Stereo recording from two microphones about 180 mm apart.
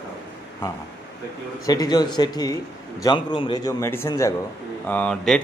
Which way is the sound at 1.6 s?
20° left (ahead or behind).